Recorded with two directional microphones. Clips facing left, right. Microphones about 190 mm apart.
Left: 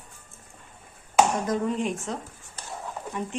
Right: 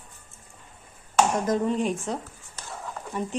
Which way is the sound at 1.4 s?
35° right (ahead or behind).